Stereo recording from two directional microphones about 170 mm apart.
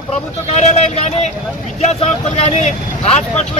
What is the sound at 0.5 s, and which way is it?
Speech, 40° left (ahead or behind).